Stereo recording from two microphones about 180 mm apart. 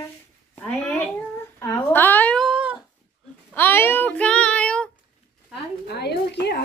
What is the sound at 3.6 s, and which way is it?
Child singing, 10° left (ahead or behind).